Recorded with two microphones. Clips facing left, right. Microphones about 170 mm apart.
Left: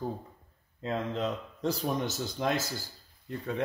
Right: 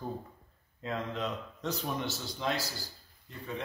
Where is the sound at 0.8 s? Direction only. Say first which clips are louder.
Left 3 dB; 30° left (ahead or behind).